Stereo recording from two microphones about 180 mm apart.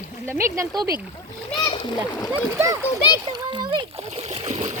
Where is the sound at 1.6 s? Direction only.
25° left (ahead or behind).